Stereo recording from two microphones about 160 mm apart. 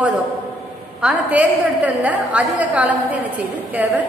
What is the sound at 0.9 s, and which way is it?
A woman's voice, 5° right (ahead or behind).